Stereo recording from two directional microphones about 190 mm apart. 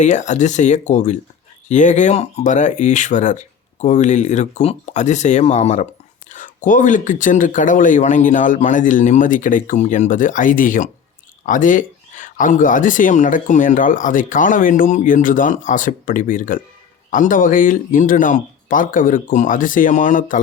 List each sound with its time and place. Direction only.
0.0 s speech: 40° left (ahead or behind)